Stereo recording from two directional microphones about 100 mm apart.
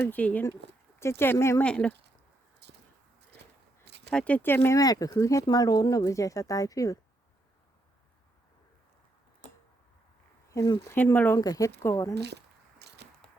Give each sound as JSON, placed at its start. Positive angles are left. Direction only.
{"t": 0.1, "sound": "speech", "side_deg": 15}
{"t": 1.6, "sound": "speech", "side_deg": 10}
{"t": 4.1, "sound": "speech", "side_deg": 10}
{"t": 4.8, "sound": "speech", "side_deg": 40}
{"t": 10.8, "sound": "speech", "side_deg": 20}
{"t": 11.3, "sound": "speech", "side_deg": 35}